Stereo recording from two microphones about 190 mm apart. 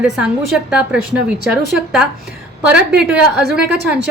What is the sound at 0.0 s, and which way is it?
A woman's voice, 5° right (ahead or behind).